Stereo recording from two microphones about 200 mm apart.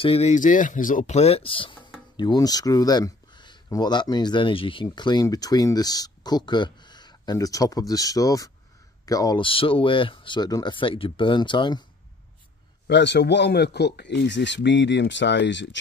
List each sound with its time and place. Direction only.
0.0 s speech: 30° left (ahead or behind)
12.8 s speech: 60° left (ahead or behind)